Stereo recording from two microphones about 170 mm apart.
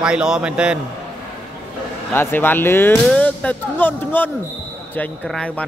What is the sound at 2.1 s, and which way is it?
Speech, 15° left (ahead or behind).